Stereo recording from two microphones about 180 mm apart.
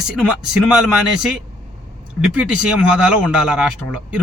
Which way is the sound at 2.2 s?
5° right (ahead or behind).